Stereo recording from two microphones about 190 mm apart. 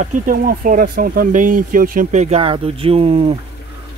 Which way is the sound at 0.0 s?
45° right (ahead or behind).